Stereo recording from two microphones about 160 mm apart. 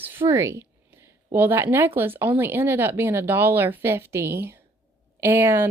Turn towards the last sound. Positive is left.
turn(degrees=-15)  # may be behind; listen again after turning